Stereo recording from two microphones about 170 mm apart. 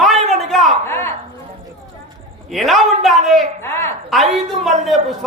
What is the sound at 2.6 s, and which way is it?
A man's voice, centre (ahead or behind).